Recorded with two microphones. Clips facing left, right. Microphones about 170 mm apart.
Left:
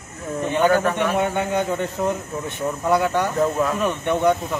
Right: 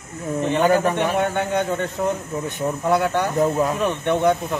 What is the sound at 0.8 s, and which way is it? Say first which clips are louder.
Speech: right 1 dB; 35° right (ahead or behind).